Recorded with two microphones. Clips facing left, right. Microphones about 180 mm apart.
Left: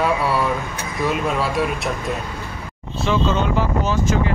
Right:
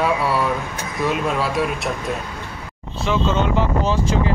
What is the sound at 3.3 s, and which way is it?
Speech, 25° right (ahead or behind).